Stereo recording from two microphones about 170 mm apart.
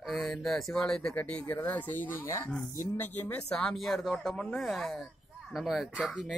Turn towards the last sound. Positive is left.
turn(degrees=0)  # may be behind; listen again after turning